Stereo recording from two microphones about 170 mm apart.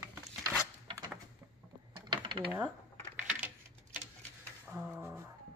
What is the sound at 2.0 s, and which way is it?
Mechanisms, 25° right (ahead or behind).